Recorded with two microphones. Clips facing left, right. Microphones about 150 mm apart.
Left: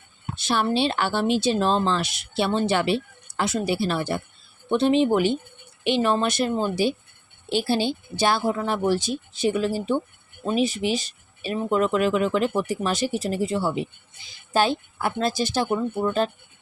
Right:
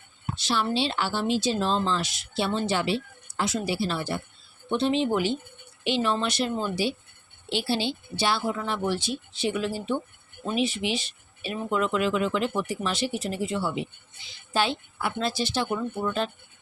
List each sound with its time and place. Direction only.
0.3 s speech: 55° left (ahead or behind)